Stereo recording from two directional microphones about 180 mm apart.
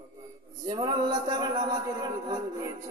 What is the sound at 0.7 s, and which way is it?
A man's voice, 25° right (ahead or behind).